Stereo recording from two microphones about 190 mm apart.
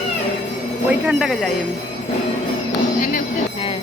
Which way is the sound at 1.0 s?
Centre (ahead or behind).